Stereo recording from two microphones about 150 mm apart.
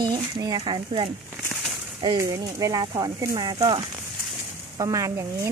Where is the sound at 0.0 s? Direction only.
30° right (ahead or behind).